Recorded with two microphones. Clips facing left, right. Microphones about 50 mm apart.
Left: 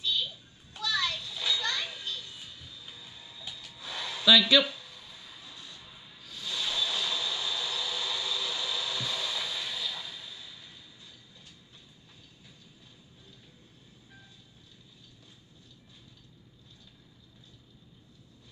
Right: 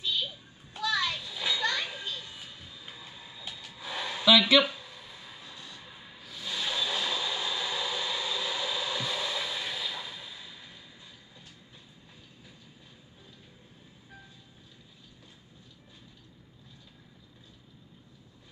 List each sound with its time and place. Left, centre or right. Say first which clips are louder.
0.0 s children playing: even; centre